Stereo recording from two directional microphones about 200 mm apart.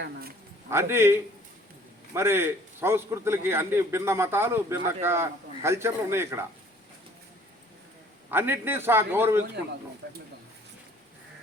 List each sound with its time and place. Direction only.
0.0 s a man's voice: 50° right (ahead or behind)
0.7 s a man's voice: 15° right (ahead or behind)
8.3 s a man's voice: 10° right (ahead or behind)